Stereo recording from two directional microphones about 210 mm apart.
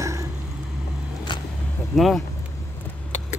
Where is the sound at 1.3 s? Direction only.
20° left (ahead or behind).